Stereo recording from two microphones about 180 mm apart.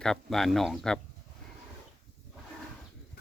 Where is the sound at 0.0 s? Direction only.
Centre (ahead or behind).